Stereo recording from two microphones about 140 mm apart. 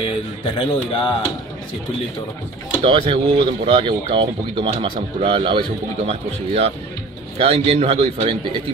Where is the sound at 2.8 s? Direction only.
40° right (ahead or behind).